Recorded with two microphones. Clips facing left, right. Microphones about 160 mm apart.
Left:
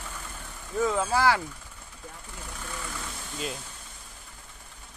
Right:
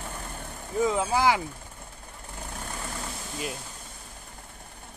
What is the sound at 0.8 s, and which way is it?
Speech, 15° right (ahead or behind).